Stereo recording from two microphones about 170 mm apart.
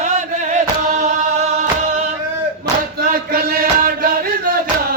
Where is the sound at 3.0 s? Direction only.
60° right (ahead or behind).